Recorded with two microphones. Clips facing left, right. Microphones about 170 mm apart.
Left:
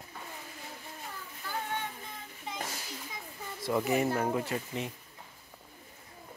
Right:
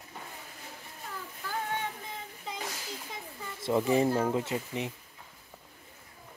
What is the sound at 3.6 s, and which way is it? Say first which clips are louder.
Speech: right 3 dB; 25° right (ahead or behind).